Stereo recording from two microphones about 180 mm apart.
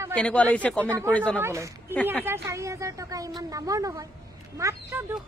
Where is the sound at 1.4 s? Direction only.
15° right (ahead or behind).